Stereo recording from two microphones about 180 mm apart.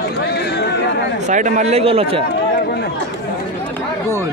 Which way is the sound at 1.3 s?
45° right (ahead or behind).